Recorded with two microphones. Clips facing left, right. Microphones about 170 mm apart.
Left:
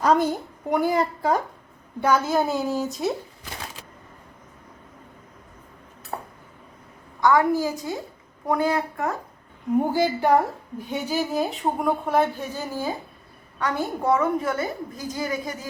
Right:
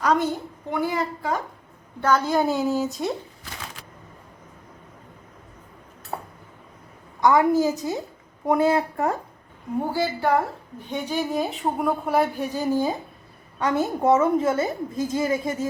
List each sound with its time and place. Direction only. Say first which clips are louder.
0.0 s a woman's voice: left 2 dB; 30° left (ahead or behind)
2.0 s a woman's voice: even; 10° left (ahead or behind)
6.1 s a sound: even; 10° right (ahead or behind)
7.2 s a woman's voice: right 1 dB; 20° right (ahead or behind)
9.9 s a woman's voice: even; 15° left (ahead or behind); by 15.6 s 25° right (ahead or behind)